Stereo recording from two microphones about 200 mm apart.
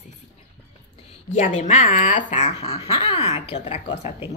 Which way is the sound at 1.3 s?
40° left (ahead or behind).